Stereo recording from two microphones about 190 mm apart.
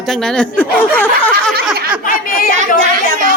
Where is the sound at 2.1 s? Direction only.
50° left (ahead or behind).